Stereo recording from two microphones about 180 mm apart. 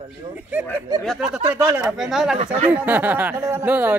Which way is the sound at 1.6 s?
20° right (ahead or behind).